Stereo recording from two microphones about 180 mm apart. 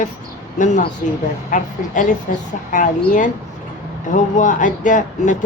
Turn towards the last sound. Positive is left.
turn(degrees=45)  # may be behind; listen again after turning